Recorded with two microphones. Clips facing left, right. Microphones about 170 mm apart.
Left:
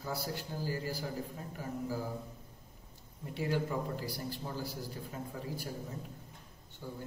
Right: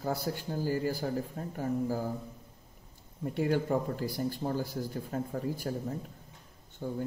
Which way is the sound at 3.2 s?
50° right (ahead or behind).